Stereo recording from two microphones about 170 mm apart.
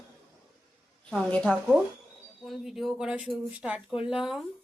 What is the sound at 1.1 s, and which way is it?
A woman's voice, centre (ahead or behind).